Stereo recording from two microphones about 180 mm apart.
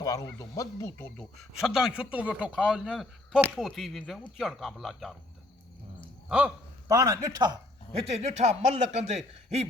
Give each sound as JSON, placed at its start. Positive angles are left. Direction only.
{"t": 0.0, "sound": "speech", "side_deg": 20}
{"t": 1.6, "sound": "speech", "side_deg": -5}
{"t": 6.2, "sound": "a sound", "side_deg": -10}
{"t": 6.9, "sound": "a man's voice", "side_deg": -20}
{"t": 7.9, "sound": "a man's voice", "side_deg": -35}